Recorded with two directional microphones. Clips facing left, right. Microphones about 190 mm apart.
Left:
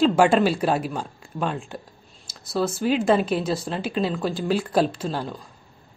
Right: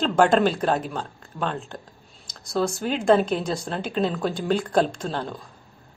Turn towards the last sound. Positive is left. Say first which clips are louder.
# left 1 dB
turn(degrees=5)  # may be behind; listen again after turning